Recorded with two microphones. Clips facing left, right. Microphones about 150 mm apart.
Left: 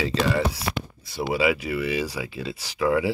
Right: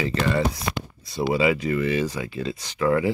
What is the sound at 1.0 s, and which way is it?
Speech, 5° left (ahead or behind).